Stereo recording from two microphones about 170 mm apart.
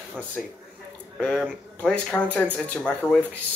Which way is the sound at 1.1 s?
5° left (ahead or behind).